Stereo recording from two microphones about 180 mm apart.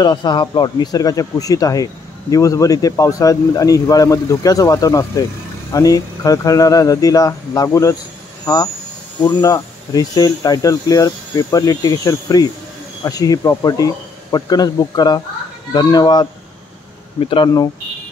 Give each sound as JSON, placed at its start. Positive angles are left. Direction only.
{"t": 0.0, "sound": "speech", "side_deg": 25}
{"t": 9.2, "sound": "speech", "side_deg": 20}